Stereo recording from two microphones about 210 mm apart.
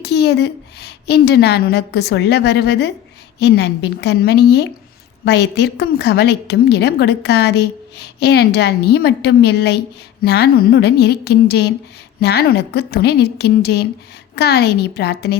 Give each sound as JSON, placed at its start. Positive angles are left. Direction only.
{"t": 0.0, "sound": "a woman's voice", "side_deg": 50}